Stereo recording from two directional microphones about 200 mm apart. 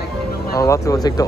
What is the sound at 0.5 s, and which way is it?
Speech, 15° left (ahead or behind).